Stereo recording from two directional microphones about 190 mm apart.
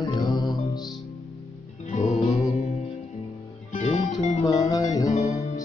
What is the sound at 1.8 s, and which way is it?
Music, 40° left (ahead or behind).